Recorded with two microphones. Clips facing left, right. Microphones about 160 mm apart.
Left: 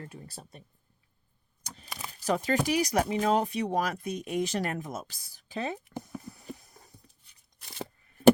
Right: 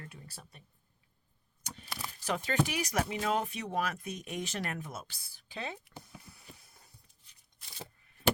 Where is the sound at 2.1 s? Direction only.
40° left (ahead or behind).